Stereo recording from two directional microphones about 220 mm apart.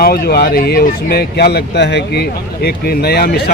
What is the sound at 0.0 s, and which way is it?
Speech, 45° left (ahead or behind).